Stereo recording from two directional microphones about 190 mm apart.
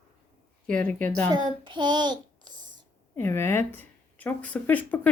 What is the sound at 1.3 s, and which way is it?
Child singing, 25° right (ahead or behind).